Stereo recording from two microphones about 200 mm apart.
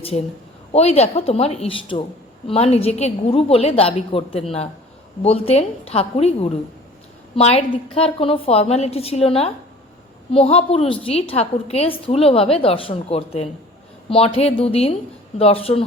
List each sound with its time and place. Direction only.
0.7 s a woman's voice: 30° left (ahead or behind)